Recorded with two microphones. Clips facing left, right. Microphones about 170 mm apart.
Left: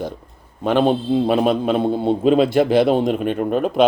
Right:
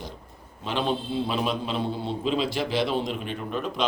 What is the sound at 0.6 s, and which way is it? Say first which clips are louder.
A man's voice: left 11 dB; 55° left (ahead or behind).